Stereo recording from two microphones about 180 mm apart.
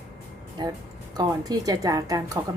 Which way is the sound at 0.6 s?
25° right (ahead or behind).